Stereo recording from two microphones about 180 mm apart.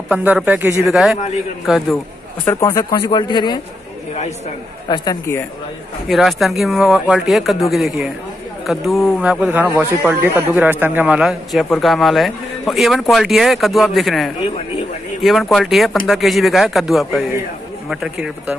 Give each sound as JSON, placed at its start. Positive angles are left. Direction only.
{"t": 0.1, "sound": "a man's voice", "side_deg": -10}
{"t": 0.8, "sound": "a man's voice", "side_deg": 0}
{"t": 2.4, "sound": "speech", "side_deg": 15}
{"t": 4.8, "sound": "speech", "side_deg": 20}
{"t": 6.0, "sound": "a man's voice", "side_deg": 0}